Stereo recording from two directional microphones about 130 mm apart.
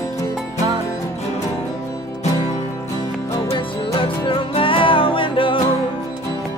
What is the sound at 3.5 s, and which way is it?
Music, 40° left (ahead or behind).